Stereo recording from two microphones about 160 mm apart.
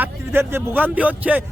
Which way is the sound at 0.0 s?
15° right (ahead or behind).